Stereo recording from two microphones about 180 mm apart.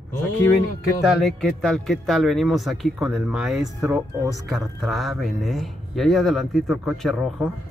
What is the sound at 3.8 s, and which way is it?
Speech, 15° right (ahead or behind).